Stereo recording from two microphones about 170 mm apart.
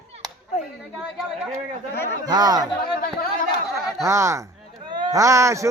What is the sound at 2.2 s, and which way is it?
Speech, 25° right (ahead or behind).